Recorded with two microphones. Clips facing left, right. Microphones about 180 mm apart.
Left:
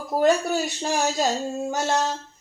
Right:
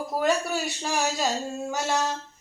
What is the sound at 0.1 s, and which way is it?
Speech, 25° left (ahead or behind).